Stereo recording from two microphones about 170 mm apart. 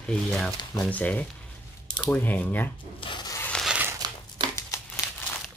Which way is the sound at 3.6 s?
10° right (ahead or behind).